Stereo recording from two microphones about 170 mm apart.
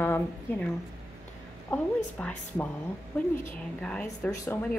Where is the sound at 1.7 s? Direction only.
10° left (ahead or behind).